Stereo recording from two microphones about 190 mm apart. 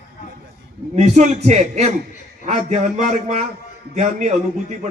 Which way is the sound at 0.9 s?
40° right (ahead or behind).